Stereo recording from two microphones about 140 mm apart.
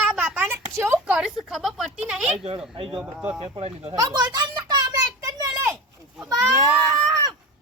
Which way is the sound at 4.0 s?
30° right (ahead or behind).